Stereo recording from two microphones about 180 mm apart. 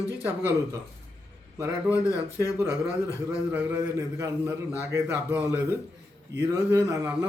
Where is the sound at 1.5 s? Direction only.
15° right (ahead or behind).